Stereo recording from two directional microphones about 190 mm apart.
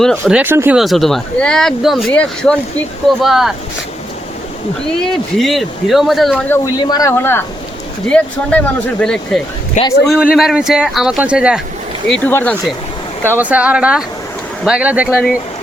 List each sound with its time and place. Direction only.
0.0 s a man's voice: centre (ahead or behind)
0.8 s speech: centre (ahead or behind)
5.0 s speech: centre (ahead or behind)
6.7 s speech: 20° left (ahead or behind)
9.8 s a man's voice: 40° left (ahead or behind)
10.3 s speech: centre (ahead or behind)
12.0 s speech: 5° left (ahead or behind)
13.2 s a man's voice: 10° right (ahead or behind)